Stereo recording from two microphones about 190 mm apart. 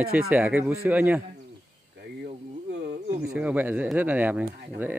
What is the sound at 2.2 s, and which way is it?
Insect, 60° right (ahead or behind).